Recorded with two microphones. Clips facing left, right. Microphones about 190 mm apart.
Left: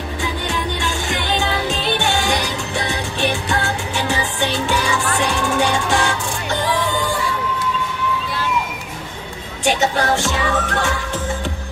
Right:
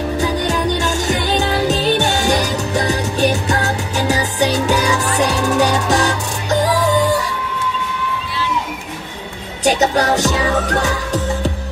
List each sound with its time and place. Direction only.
0.2 s music: 40° right (ahead or behind)
9.7 s music: 40° right (ahead or behind)